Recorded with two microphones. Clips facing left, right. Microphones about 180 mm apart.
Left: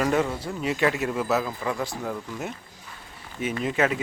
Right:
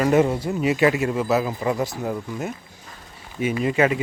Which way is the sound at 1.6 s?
20° right (ahead or behind).